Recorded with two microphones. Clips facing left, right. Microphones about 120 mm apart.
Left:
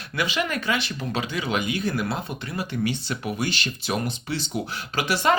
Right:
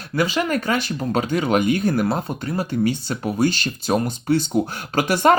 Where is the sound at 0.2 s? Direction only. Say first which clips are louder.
Right 5 dB; 40° right (ahead or behind).